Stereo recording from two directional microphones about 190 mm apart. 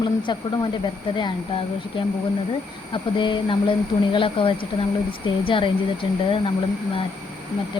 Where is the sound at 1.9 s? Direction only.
25° left (ahead or behind).